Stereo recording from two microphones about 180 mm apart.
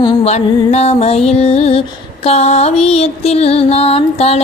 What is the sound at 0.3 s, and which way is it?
Music, 35° left (ahead or behind).